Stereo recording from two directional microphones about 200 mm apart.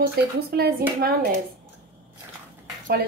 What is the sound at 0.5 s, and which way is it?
Speech, 50° right (ahead or behind).